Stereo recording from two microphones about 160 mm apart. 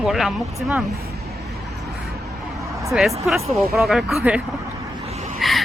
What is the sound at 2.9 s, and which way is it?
Speech, centre (ahead or behind).